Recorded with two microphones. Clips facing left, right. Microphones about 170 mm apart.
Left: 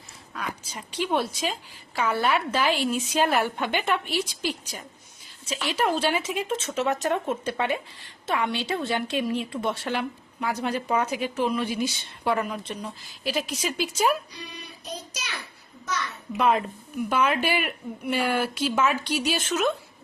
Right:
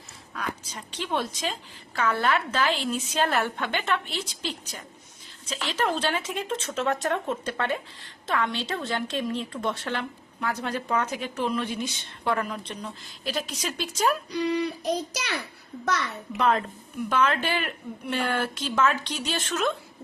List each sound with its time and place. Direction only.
0.3 s a woman's voice: 10° left (ahead or behind)
14.3 s a child's voice: 65° right (ahead or behind)
16.4 s a woman's voice: 10° left (ahead or behind)